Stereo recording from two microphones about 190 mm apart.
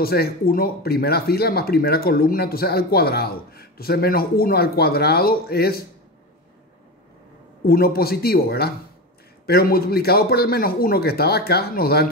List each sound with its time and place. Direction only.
0.0 s speech: 55° left (ahead or behind)
7.6 s speech: 55° left (ahead or behind)